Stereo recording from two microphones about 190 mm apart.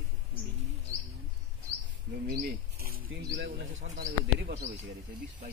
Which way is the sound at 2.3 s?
50° right (ahead or behind).